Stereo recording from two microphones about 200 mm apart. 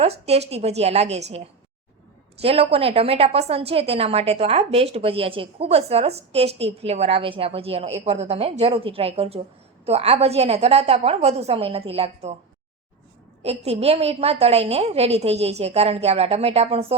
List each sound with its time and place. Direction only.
0.0 s a woman's voice: 30° right (ahead or behind)
2.4 s a woman's voice: 30° right (ahead or behind)
13.4 s a woman's voice: 30° right (ahead or behind)